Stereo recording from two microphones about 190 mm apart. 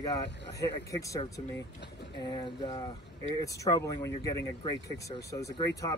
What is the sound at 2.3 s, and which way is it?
Speech, 25° left (ahead or behind).